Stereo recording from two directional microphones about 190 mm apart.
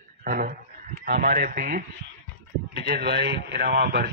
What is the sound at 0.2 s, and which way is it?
Speech, 45° right (ahead or behind).